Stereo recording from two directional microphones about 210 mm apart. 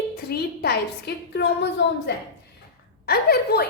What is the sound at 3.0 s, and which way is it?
Speech, 50° left (ahead or behind).